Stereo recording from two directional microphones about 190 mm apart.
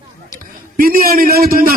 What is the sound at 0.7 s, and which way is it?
A man's voice, 50° right (ahead or behind).